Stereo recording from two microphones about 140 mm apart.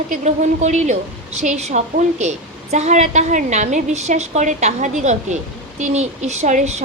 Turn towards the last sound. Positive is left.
turn(degrees=-55)  # may be behind; listen again after turning